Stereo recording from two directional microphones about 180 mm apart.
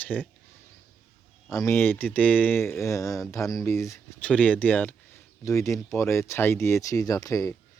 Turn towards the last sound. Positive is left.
turn(degrees=20)  # may be behind; listen again after turning